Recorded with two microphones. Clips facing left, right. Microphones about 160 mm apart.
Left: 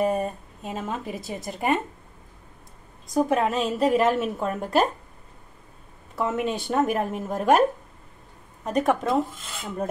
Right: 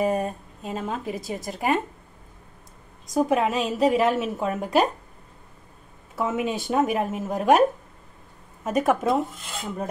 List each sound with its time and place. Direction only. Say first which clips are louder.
0.0 s a woman's voice: even; centre (ahead or behind)
3.2 s a woman's voice: even; centre (ahead or behind)
6.1 s a woman's voice: even; 5° right (ahead or behind)
8.6 s a woman's voice: right 1 dB; centre (ahead or behind)